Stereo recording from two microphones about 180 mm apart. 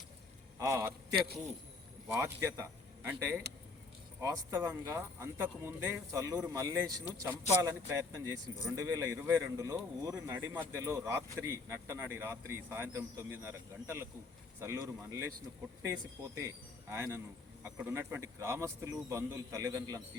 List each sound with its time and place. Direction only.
0.6 s speech: 15° right (ahead or behind)
2.0 s a man's voice: 15° right (ahead or behind)